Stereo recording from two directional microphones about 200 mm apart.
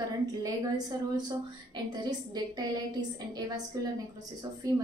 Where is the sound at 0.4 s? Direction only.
20° right (ahead or behind).